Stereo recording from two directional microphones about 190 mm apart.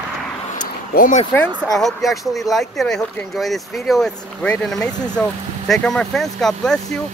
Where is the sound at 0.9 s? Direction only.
45° left (ahead or behind).